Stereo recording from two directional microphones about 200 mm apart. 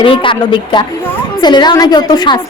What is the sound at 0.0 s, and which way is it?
A woman's voice, 25° left (ahead or behind).